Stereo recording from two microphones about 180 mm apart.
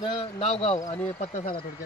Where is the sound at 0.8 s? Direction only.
20° left (ahead or behind).